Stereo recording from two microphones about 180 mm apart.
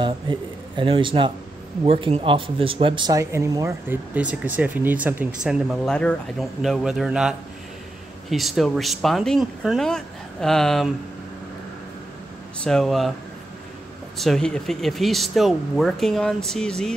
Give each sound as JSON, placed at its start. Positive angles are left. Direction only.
{"t": 0.0, "sound": "a man's voice", "side_deg": -25}
{"t": 12.6, "sound": "speech", "side_deg": 0}
{"t": 14.1, "sound": "speech", "side_deg": 0}